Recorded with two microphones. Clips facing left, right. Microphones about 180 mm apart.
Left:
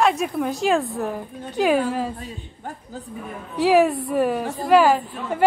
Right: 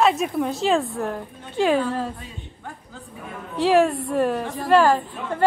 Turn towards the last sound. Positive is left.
turn(degrees=10)  # may be behind; listen again after turning